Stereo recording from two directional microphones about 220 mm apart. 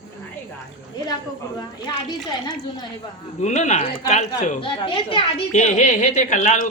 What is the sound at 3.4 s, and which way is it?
Speech, 30° left (ahead or behind).